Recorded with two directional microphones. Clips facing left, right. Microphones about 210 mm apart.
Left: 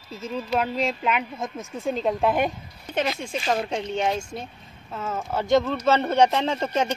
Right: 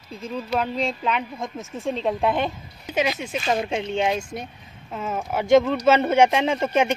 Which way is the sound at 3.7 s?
20° right (ahead or behind).